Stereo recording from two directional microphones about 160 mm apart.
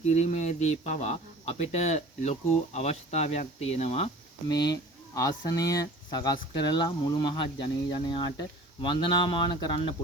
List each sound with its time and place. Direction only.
0.0 s speech: 45° left (ahead or behind)
4.4 s speech: 25° left (ahead or behind)